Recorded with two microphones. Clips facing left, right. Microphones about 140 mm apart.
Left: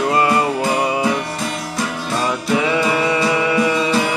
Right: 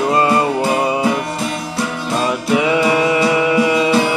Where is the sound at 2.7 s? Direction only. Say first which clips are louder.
Right 3 dB; 25° right (ahead or behind).